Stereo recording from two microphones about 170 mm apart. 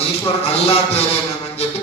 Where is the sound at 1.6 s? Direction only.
40° left (ahead or behind).